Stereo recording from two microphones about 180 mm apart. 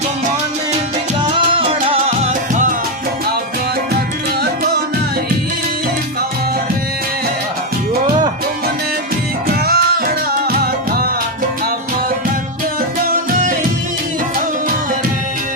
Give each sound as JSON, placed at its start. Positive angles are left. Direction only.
{"t": 1.2, "sound": "music", "side_deg": -30}
{"t": 9.6, "sound": "music", "side_deg": -55}